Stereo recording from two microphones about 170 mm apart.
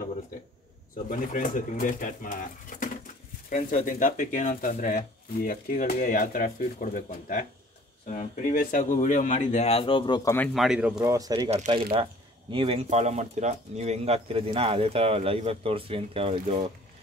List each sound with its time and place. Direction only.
1.1 s speech: 50° left (ahead or behind)
3.4 s speech: 50° left (ahead or behind); by 10.3 s 25° left (ahead or behind)
10.5 s speech: centre (ahead or behind)
11.1 s speech: 20° right (ahead or behind)
11.5 s speech: 35° right (ahead or behind)